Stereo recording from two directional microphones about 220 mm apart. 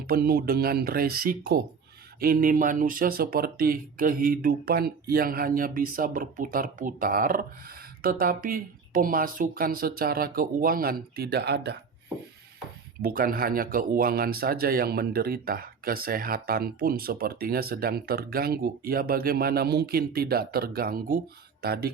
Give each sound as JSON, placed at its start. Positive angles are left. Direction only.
{"t": 0.1, "sound": "speech", "side_deg": -40}
{"t": 13.0, "sound": "speech", "side_deg": -40}